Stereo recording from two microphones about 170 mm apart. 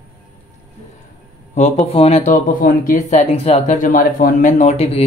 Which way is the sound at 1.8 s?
35° left (ahead or behind).